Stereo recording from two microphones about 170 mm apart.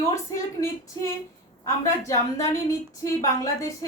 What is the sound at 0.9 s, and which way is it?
A woman's voice, 20° left (ahead or behind).